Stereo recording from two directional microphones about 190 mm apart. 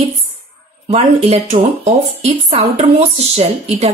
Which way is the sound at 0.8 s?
35° right (ahead or behind).